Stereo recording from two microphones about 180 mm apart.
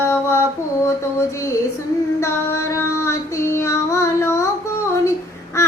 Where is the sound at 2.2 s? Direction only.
15° left (ahead or behind).